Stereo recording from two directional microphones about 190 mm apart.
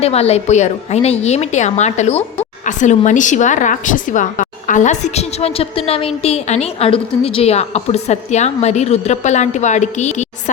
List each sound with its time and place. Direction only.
0.0 s a woman's voice: 35° left (ahead or behind)